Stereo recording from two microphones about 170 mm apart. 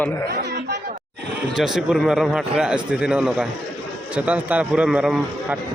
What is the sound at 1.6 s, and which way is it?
A man's voice, centre (ahead or behind).